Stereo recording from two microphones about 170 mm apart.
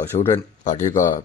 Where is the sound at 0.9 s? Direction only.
50° left (ahead or behind).